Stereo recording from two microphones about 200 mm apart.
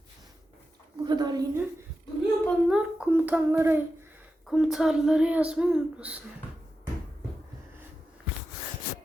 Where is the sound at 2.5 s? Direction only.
5° right (ahead or behind).